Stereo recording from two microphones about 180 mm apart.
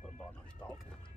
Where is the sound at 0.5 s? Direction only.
5° left (ahead or behind).